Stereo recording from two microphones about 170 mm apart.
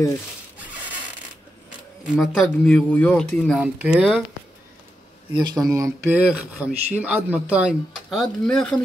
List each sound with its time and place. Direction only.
0.6 s zipper: 10° right (ahead or behind)
2.0 s speech: centre (ahead or behind)
5.3 s speech: 25° right (ahead or behind)
5.7 s speech: 15° right (ahead or behind); by 8.8 s 5° left (ahead or behind)